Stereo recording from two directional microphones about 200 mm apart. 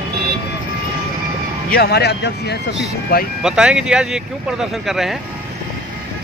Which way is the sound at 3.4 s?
5° right (ahead or behind).